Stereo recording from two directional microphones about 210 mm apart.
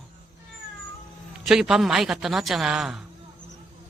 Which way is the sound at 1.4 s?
Centre (ahead or behind).